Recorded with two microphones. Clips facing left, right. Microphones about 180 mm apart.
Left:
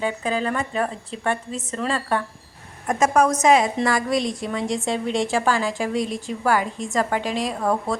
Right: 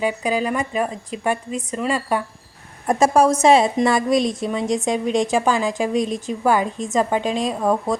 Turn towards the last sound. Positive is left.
turn(degrees=-20)  # may be behind; listen again after turning